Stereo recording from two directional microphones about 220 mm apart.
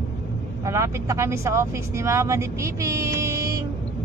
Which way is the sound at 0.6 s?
15° right (ahead or behind).